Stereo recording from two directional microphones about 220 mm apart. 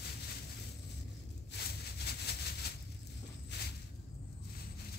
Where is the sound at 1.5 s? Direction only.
50° left (ahead or behind).